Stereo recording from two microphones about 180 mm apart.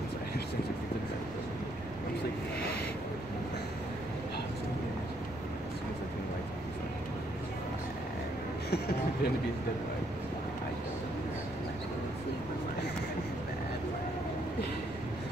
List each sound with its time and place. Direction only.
8.6 s speech: 60° left (ahead or behind)